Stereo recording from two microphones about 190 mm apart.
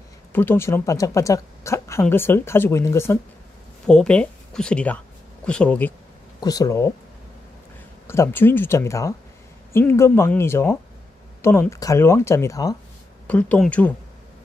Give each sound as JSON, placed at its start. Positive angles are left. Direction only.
{"t": 0.3, "sound": "speech", "side_deg": 10}
{"t": 6.4, "sound": "speech", "side_deg": 20}
{"t": 8.1, "sound": "speech", "side_deg": 10}